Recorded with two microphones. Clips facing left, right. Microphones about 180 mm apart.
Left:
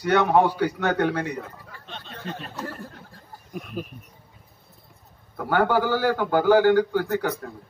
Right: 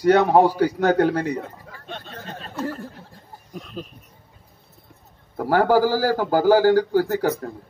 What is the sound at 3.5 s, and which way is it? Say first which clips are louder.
Speech: left 2 dB; 10° left (ahead or behind).